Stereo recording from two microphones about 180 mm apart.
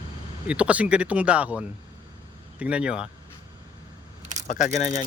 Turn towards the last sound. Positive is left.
turn(degrees=50)  # may be behind; listen again after turning